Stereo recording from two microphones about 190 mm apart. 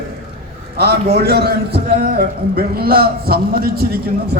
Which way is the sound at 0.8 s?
55° right (ahead or behind).